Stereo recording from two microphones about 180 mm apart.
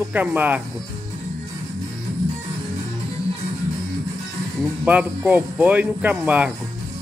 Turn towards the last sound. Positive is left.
turn(degrees=-5)  # may be behind; listen again after turning